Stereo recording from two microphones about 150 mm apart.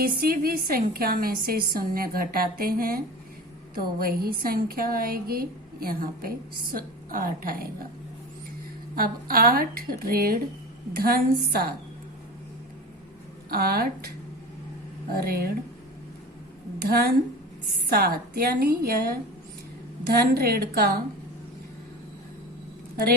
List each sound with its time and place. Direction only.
0.0 s a woman's voice: 90° right
9.0 s a woman's voice: 85° right
13.5 s speech: 90° right
15.2 s speech: 90° right
16.9 s speech: 90° right